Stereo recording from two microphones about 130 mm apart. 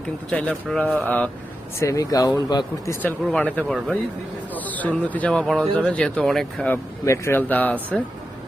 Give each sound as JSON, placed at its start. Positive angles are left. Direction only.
{"t": 0.3, "sound": "speech", "side_deg": 10}
{"t": 1.8, "sound": "speech", "side_deg": 25}
{"t": 3.0, "sound": "speech", "side_deg": 10}
{"t": 7.0, "sound": "speech", "side_deg": 20}